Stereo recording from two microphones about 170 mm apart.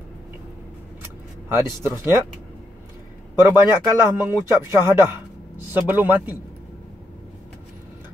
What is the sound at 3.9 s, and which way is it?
Speech, 15° right (ahead or behind).